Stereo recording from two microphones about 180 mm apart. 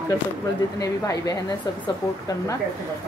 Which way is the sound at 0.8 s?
20° left (ahead or behind).